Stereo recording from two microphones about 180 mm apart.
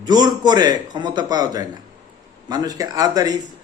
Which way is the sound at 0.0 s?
25° right (ahead or behind).